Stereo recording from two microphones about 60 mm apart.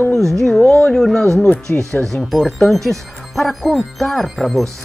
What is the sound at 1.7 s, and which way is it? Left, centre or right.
Speech, left.